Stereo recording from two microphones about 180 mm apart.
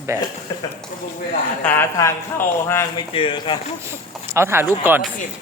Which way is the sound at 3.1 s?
30° left (ahead or behind).